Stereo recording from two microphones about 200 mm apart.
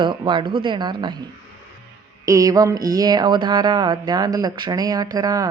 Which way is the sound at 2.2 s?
15° right (ahead or behind).